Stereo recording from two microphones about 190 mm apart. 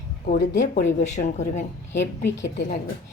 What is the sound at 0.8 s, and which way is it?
Speech, 40° left (ahead or behind).